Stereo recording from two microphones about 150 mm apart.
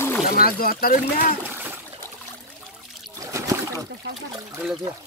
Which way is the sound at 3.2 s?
20° right (ahead or behind).